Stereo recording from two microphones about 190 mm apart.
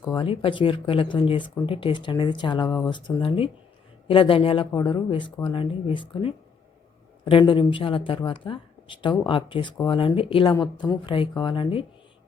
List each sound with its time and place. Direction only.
0.2 s speech: 25° left (ahead or behind)